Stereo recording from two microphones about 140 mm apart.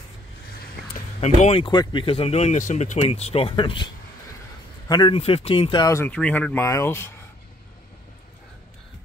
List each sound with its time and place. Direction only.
0.8 s a sound: 90° left
1.2 s speech: 50° left (ahead or behind)
1.7 s speech: 35° left (ahead or behind); by 3.0 s 60° left (ahead or behind)
3.0 s a man's voice: 50° left (ahead or behind); by 5.1 s 30° left (ahead or behind)
5.1 s speech: 45° left (ahead or behind)
5.8 s speech: 25° left (ahead or behind)
6.0 s speech: 10° left (ahead or behind)